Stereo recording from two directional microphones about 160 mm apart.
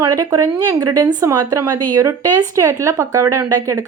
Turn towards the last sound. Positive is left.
turn(degrees=-20)  # may be behind; listen again after turning